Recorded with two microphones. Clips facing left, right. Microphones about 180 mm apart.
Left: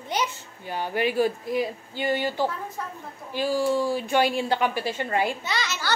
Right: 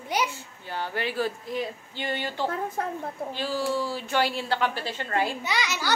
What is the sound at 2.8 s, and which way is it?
Speech, 60° right (ahead or behind).